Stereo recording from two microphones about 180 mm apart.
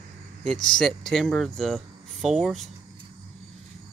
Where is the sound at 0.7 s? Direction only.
Centre (ahead or behind).